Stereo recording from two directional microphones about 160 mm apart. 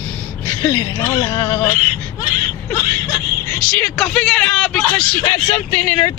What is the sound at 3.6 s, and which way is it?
Speech, 5° left (ahead or behind).